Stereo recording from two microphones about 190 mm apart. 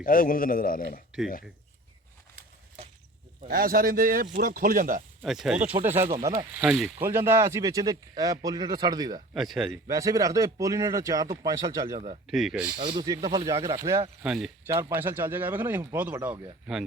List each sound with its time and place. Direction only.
0.0 s a man's voice: 50° left (ahead or behind)
3.4 s speech: 50° right (ahead or behind)
5.2 s speech: centre (ahead or behind)
5.9 s speech: 35° right (ahead or behind)
6.6 s speech: 5° right (ahead or behind); by 9.2 s 20° right (ahead or behind)
9.3 s speech: centre (ahead or behind)
9.9 s speech: 20° right (ahead or behind)
11.9 s speech: 35° right (ahead or behind)
12.3 s speech: 5° right (ahead or behind)
12.8 s speech: 25° right (ahead or behind)
14.2 s speech: 5° right (ahead or behind)
14.7 s speech: 15° right (ahead or behind)